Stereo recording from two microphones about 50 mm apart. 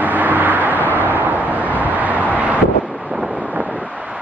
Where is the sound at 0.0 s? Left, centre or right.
Right.